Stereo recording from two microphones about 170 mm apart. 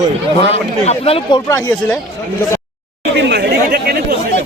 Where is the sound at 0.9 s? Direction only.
35° left (ahead or behind).